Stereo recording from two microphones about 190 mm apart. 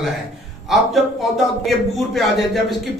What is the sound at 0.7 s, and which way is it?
A man's voice, centre (ahead or behind).